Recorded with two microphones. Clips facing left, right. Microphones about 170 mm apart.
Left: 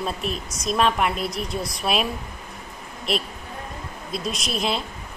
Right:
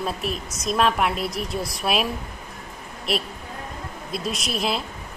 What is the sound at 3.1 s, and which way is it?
A woman's voice, 5° right (ahead or behind).